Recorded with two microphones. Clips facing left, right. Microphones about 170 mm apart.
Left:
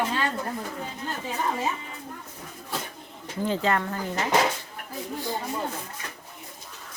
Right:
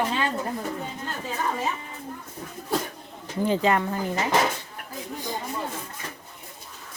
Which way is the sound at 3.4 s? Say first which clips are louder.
Right 3 dB; 15° right (ahead or behind).